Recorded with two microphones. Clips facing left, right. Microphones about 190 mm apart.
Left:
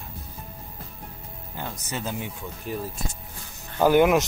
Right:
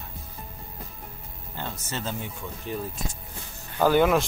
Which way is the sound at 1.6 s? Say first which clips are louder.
Left 1 dB; 10° left (ahead or behind).